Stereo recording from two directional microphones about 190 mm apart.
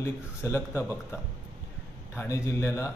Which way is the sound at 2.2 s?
15° left (ahead or behind).